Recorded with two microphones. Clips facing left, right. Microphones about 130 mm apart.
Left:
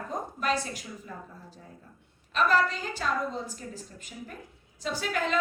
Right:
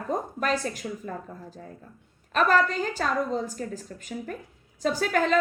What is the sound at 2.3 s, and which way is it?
A woman's voice, 45° right (ahead or behind).